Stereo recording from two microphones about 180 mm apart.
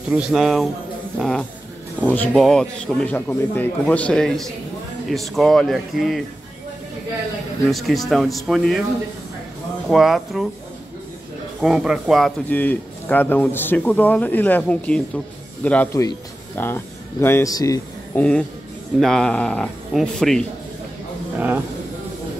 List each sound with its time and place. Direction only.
0.1 s speech: 5° right (ahead or behind)
7.6 s speech: centre (ahead or behind)
9.8 s speech: centre (ahead or behind)
11.6 s a man's voice: 5° right (ahead or behind); by 17.8 s 20° left (ahead or behind)
18.1 s speech: 5° left (ahead or behind)